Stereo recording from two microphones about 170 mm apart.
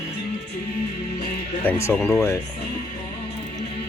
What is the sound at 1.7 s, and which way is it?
Speech, 15° left (ahead or behind).